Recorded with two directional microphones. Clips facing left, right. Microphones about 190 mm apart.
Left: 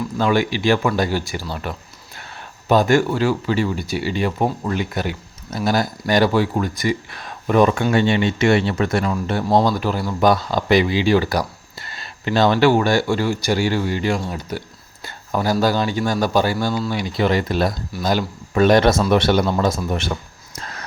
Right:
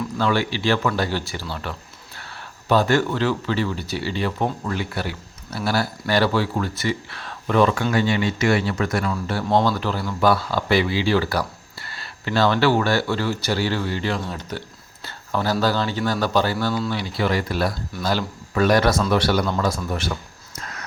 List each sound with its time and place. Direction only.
0.2 s speech: 15° left (ahead or behind)
15.0 s a sound: 15° left (ahead or behind)
15.6 s speech: 15° left (ahead or behind)
20.6 s whispering: 35° left (ahead or behind)